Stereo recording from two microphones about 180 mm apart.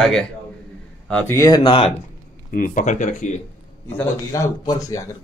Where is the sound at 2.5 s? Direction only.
45° left (ahead or behind).